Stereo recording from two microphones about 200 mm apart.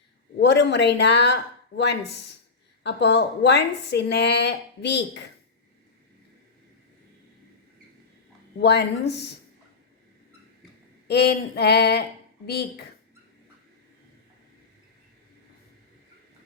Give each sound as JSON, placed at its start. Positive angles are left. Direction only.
{"t": 0.3, "sound": "a woman's voice", "side_deg": 60}
{"t": 8.6, "sound": "a woman's voice", "side_deg": 55}
{"t": 11.1, "sound": "a woman's voice", "side_deg": 55}